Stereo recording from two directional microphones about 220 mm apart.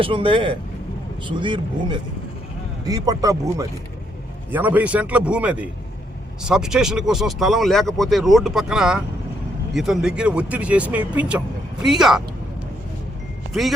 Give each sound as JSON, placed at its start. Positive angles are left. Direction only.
{"t": 0.0, "sound": "a man's voice", "side_deg": -25}
{"t": 13.5, "sound": "speech", "side_deg": 0}